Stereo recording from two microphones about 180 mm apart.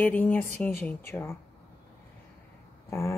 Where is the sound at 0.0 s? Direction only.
10° left (ahead or behind).